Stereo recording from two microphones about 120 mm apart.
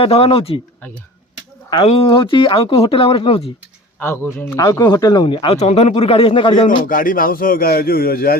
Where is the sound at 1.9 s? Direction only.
50° left (ahead or behind).